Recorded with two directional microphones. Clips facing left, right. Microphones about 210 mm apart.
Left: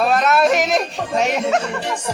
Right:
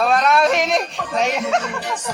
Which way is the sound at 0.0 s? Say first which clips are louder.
Left 1 dB; centre (ahead or behind).